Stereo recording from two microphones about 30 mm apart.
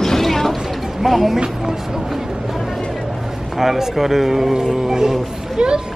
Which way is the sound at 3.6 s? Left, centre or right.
Centre.